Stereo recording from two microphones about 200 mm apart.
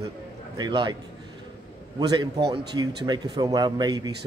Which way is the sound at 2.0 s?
20° right (ahead or behind).